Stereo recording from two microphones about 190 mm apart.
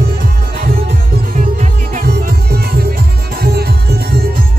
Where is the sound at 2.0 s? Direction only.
55° right (ahead or behind).